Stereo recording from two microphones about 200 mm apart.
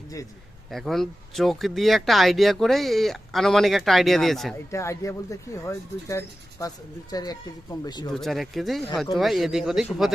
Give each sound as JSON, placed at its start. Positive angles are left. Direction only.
{"t": 0.7, "sound": "speech", "side_deg": 0}
{"t": 4.7, "sound": "speech", "side_deg": 15}
{"t": 8.1, "sound": "speech", "side_deg": 0}